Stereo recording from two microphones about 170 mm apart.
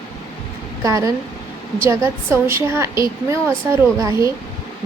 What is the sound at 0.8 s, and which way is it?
A woman's voice, 20° right (ahead or behind).